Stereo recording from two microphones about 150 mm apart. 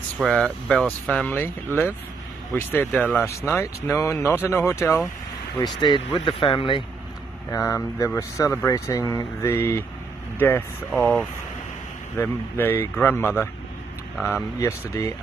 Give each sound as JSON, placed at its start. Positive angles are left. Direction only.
{"t": 0.2, "sound": "speech", "side_deg": 5}
{"t": 2.5, "sound": "speech", "side_deg": 10}
{"t": 3.3, "sound": "speech", "side_deg": 20}
{"t": 5.6, "sound": "speech", "side_deg": 30}
{"t": 7.5, "sound": "speech", "side_deg": 20}
{"t": 10.9, "sound": "speech", "side_deg": 0}
{"t": 12.2, "sound": "speech", "side_deg": 15}